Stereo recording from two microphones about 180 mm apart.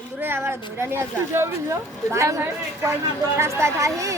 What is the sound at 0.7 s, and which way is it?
Speech, 15° right (ahead or behind).